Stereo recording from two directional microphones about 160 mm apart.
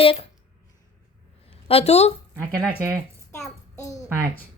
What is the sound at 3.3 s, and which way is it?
Child singing, 20° left (ahead or behind).